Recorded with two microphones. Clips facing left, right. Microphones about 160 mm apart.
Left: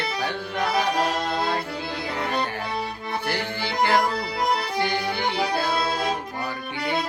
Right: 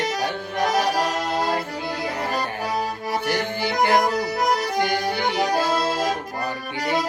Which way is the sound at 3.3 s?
15° right (ahead or behind).